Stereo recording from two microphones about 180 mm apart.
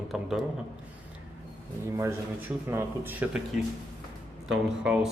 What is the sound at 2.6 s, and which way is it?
Speech, 10° right (ahead or behind).